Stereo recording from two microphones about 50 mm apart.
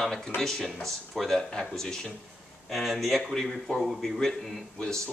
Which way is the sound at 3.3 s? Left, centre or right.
Centre.